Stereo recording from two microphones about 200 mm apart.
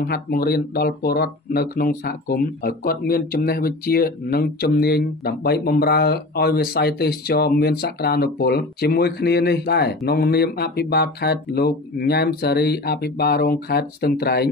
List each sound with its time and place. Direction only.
0.0 s speech: 50° left (ahead or behind)